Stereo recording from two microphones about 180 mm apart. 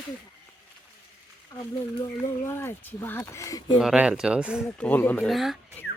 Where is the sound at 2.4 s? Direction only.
15° left (ahead or behind).